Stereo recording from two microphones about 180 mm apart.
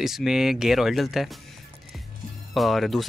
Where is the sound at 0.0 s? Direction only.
Centre (ahead or behind).